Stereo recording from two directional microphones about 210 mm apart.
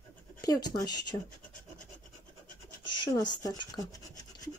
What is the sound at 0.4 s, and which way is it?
Speech, 20° left (ahead or behind).